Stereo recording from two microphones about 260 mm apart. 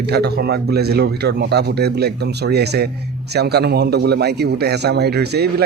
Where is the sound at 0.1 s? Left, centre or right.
Right.